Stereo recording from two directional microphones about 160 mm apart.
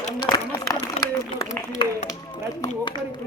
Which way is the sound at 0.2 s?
25° left (ahead or behind).